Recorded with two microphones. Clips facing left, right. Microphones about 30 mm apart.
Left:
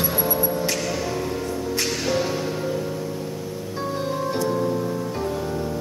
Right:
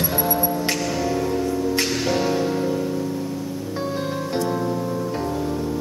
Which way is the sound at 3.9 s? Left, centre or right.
Centre.